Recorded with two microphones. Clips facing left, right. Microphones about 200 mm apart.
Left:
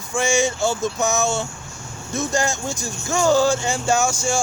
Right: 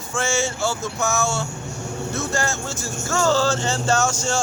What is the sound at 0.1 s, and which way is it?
Speech, 15° left (ahead or behind).